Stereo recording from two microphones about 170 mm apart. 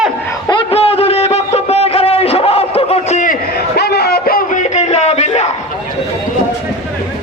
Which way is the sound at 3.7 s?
75° left (ahead or behind).